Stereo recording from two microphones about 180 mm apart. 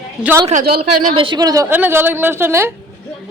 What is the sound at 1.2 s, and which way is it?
A woman's voice, 25° right (ahead or behind).